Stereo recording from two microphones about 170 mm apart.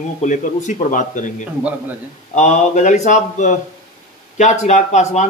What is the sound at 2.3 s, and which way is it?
A man's voice, 45° left (ahead or behind).